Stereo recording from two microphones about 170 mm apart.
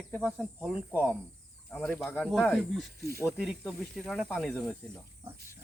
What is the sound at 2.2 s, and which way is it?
Speech, centre (ahead or behind).